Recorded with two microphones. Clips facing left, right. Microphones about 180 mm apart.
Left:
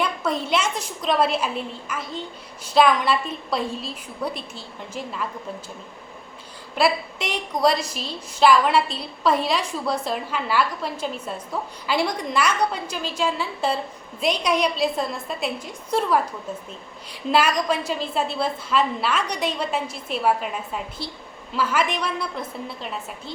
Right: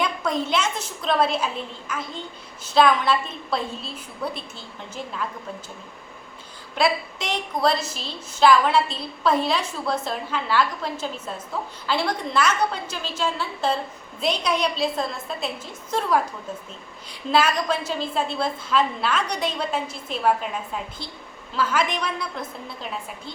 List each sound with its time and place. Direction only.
0.0 s a woman's voice: 5° left (ahead or behind)
6.7 s a woman's voice: 5° left (ahead or behind)
17.2 s a woman's voice: 10° left (ahead or behind)